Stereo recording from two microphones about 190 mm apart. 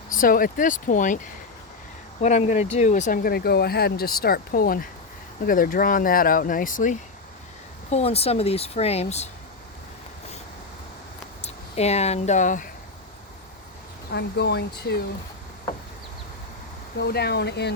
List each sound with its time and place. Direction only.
0.1 s speech: 45° left (ahead or behind)
11.4 s speech: 35° left (ahead or behind)
14.1 s speech: 60° left (ahead or behind)
17.1 s speech: 60° left (ahead or behind)